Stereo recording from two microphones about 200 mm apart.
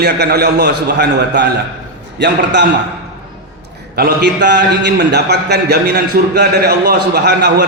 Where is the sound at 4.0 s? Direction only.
55° right (ahead or behind).